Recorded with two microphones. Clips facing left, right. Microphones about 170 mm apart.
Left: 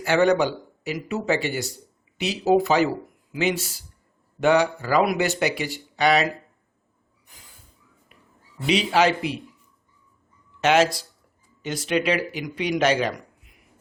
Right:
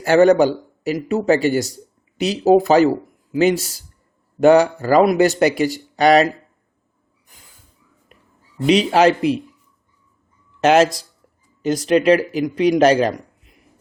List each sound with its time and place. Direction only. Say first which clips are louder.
0.0 s a man's voice: right 7 dB; 45° right (ahead or behind)
8.7 s speech: right 6 dB; 45° right (ahead or behind)
10.6 s a man's voice: right 5 dB; 40° right (ahead or behind)